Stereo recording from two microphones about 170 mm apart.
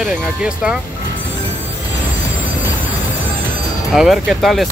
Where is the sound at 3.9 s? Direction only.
Centre (ahead or behind).